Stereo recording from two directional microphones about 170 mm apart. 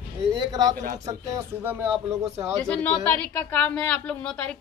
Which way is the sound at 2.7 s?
10° left (ahead or behind).